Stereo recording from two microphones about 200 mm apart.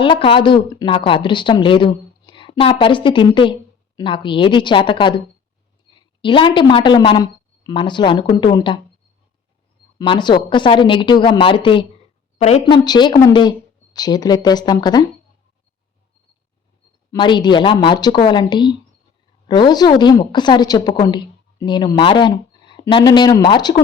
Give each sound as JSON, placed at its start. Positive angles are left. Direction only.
{"t": 0.0, "sound": "a woman's voice", "side_deg": 25}
{"t": 10.0, "sound": "a woman's voice", "side_deg": 25}
{"t": 17.1, "sound": "a woman's voice", "side_deg": 25}